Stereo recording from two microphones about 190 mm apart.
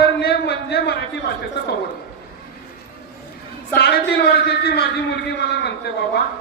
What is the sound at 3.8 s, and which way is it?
A man's voice, 60° left (ahead or behind).